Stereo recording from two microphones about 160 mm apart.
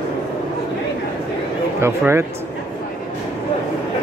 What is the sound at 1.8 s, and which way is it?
Speech, 15° right (ahead or behind).